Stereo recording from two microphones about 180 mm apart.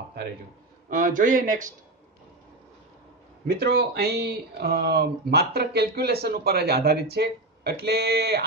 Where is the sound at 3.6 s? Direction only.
60° right (ahead or behind).